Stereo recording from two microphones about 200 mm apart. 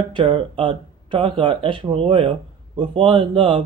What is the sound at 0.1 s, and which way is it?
Speech, 25° right (ahead or behind).